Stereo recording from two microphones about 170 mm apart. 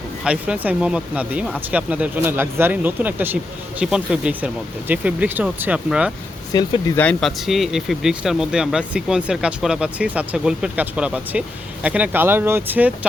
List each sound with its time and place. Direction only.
0.3 s speech: 10° right (ahead or behind)
6.5 s speech: 20° left (ahead or behind)
6.9 s speech: 5° left (ahead or behind); by 13.1 s 10° right (ahead or behind)